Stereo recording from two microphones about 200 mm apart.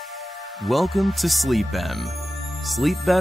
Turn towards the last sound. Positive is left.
turn(degrees=0)  # may be behind; listen again after turning